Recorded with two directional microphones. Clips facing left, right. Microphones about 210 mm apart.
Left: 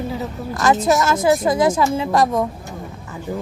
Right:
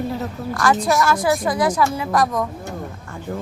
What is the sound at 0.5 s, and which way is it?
A woman's voice, 20° left (ahead or behind).